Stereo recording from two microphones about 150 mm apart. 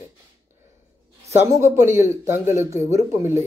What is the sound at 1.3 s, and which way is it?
Speech, 20° right (ahead or behind).